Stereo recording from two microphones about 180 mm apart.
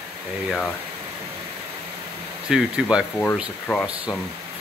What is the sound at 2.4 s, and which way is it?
Speech, 5° right (ahead or behind).